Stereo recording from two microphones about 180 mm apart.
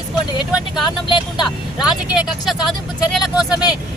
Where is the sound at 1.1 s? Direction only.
25° left (ahead or behind).